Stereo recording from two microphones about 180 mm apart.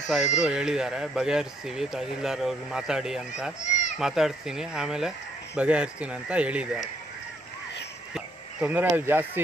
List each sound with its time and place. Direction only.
0.0 s speech: centre (ahead or behind)
3.6 s children playing: 40° left (ahead or behind)
4.0 s speech: centre (ahead or behind)
8.1 s speech: 5° right (ahead or behind)